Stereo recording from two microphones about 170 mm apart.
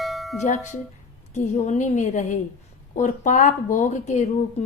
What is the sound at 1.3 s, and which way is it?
A woman's voice, 45° left (ahead or behind).